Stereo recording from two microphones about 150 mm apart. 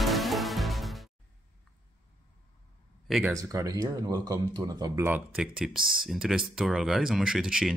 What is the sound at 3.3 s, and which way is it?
Speech, 20° right (ahead or behind).